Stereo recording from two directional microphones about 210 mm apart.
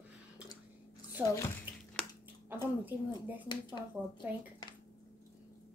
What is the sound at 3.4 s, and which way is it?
Speech, 20° left (ahead or behind).